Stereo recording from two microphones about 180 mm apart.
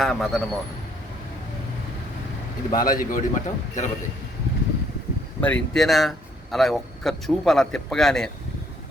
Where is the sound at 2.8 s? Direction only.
50° left (ahead or behind).